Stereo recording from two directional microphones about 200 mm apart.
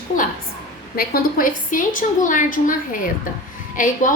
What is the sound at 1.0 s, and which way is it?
A woman's voice, 45° left (ahead or behind).